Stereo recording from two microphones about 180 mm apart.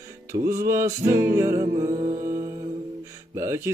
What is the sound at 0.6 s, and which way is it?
Music, 15° right (ahead or behind).